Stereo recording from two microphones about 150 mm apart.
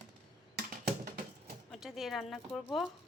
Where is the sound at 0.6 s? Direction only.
90° right.